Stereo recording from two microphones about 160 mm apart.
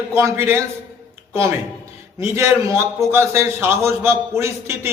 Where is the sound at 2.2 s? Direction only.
15° right (ahead or behind).